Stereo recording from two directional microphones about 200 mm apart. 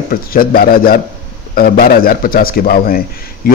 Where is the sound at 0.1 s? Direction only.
45° left (ahead or behind).